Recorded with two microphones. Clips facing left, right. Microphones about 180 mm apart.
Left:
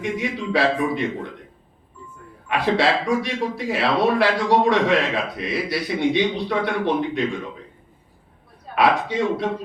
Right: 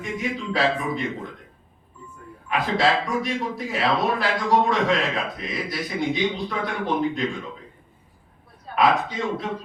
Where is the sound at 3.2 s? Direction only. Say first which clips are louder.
Left 3 dB; 70° left (ahead or behind).